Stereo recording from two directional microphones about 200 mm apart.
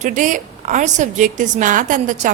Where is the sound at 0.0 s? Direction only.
40° right (ahead or behind).